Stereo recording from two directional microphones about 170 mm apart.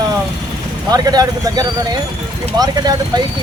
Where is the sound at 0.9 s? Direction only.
20° right (ahead or behind).